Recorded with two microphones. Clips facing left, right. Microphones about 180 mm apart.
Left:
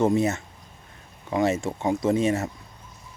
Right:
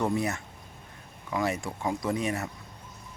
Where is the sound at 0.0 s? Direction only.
25° left (ahead or behind).